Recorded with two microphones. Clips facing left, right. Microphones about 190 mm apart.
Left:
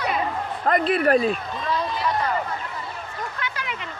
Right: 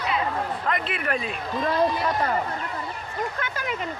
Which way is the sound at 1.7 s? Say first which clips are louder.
Right 2 dB; 45° right (ahead or behind).